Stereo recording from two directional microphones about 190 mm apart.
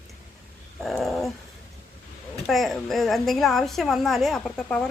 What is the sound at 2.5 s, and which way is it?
A woman's voice, centre (ahead or behind).